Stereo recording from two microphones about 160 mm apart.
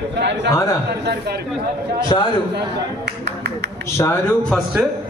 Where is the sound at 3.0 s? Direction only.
90° right.